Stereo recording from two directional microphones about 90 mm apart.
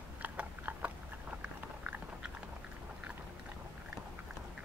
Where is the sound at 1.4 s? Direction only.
15° right (ahead or behind).